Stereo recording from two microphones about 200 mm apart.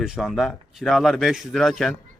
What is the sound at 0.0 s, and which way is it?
A man's voice, centre (ahead or behind).